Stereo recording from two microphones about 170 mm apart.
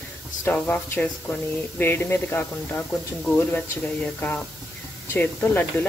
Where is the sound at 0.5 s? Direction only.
15° left (ahead or behind).